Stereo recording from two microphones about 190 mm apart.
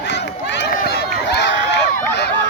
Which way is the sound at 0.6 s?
55° left (ahead or behind).